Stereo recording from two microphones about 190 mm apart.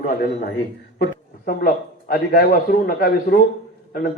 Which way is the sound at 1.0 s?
50° left (ahead or behind).